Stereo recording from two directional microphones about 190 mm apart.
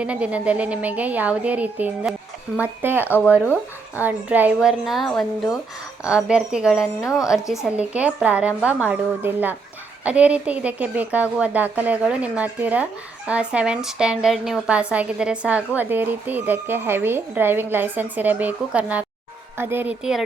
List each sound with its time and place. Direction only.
0.0 s a woman's voice: 5° right (ahead or behind)
7.0 s a woman's voice: 15° left (ahead or behind)
7.3 s speech: centre (ahead or behind)